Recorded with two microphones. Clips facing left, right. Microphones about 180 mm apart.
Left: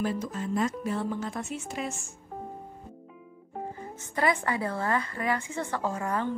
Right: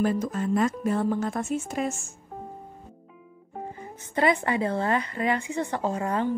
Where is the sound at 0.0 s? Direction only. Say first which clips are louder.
Right 5 dB; 50° right (ahead or behind).